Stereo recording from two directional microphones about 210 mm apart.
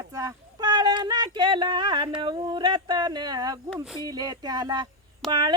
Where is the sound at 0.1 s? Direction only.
15° right (ahead or behind).